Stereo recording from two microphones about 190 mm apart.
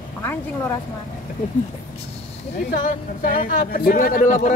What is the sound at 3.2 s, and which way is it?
Speech, 50° left (ahead or behind).